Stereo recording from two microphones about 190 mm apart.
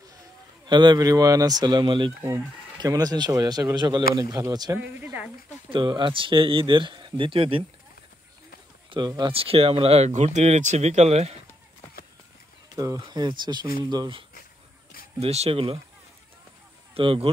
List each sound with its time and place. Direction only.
0.7 s speech: 25° right (ahead or behind)
5.7 s speech: 25° right (ahead or behind)
8.9 s speech: 25° right (ahead or behind)
12.7 s speech: 20° right (ahead or behind)
15.1 s speech: 35° right (ahead or behind)
16.9 s speech: 30° right (ahead or behind)